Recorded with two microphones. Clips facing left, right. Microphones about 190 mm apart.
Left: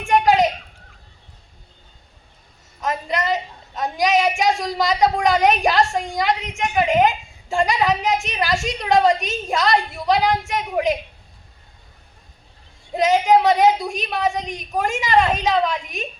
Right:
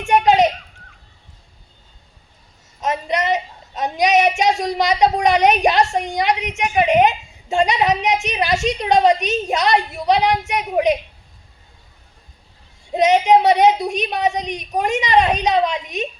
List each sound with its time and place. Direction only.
0.0 s a sound: 20° right (ahead or behind)
2.8 s a woman's voice: 20° right (ahead or behind)
12.9 s a woman's voice: 20° right (ahead or behind)